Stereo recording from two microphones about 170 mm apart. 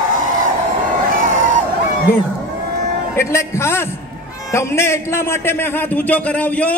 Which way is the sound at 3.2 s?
15° left (ahead or behind).